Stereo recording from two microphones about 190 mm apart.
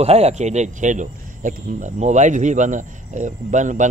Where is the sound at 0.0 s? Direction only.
35° right (ahead or behind).